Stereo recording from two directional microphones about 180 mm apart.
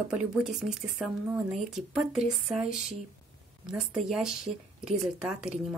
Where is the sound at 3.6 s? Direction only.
5° right (ahead or behind).